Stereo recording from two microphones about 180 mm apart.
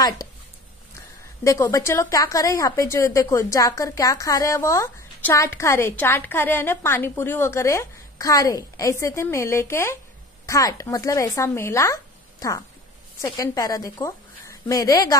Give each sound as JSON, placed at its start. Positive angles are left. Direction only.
{"t": 1.4, "sound": "a woman's voice", "side_deg": 15}